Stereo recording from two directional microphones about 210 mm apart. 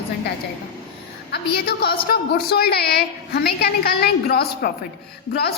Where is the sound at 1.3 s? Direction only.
45° left (ahead or behind).